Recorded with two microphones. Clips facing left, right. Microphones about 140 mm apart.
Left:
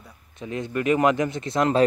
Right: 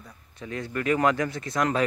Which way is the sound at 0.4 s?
20° left (ahead or behind).